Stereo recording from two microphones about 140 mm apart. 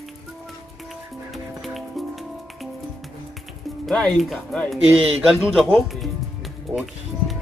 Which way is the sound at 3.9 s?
5° left (ahead or behind).